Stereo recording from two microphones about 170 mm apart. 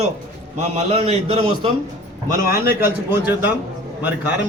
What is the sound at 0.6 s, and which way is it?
A man's voice, 40° right (ahead or behind).